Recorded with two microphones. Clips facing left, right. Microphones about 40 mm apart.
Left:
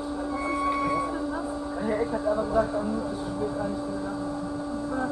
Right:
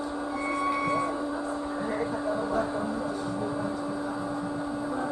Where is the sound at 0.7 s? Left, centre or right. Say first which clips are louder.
Left 1 dB; centre.